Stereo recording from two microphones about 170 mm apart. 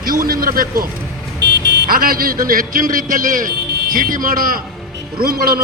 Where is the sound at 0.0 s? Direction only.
60° right (ahead or behind).